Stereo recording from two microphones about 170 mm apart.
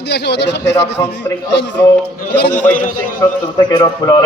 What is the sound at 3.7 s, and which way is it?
Speech, 25° left (ahead or behind).